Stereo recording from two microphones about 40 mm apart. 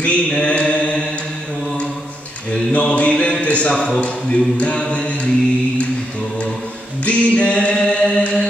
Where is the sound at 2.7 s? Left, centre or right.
Left.